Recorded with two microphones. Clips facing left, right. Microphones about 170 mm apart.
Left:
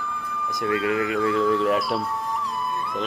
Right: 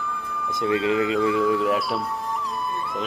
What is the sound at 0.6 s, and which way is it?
Speech, 20° right (ahead or behind).